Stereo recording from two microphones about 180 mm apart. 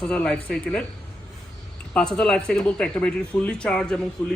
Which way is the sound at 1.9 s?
5° left (ahead or behind).